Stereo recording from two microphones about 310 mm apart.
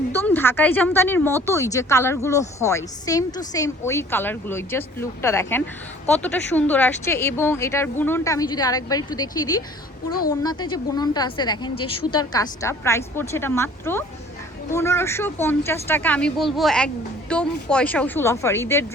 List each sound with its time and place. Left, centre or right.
0.1 s speech: centre
10.1 s a woman's voice: left
10.4 s speech: centre